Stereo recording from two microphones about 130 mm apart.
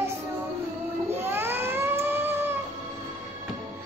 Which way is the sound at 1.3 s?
15° right (ahead or behind).